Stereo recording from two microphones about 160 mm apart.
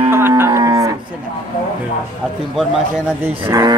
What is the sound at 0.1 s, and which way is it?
Cattle, 15° right (ahead or behind).